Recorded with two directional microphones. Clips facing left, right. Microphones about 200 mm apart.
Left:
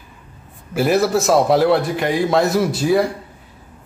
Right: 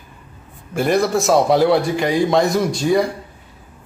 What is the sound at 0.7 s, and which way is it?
A man's voice, 5° left (ahead or behind).